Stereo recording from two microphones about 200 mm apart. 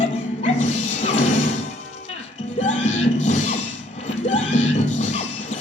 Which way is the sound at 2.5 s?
35° left (ahead or behind).